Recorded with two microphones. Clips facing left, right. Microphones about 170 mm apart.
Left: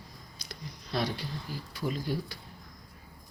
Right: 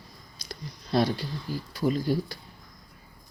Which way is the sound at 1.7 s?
40° right (ahead or behind).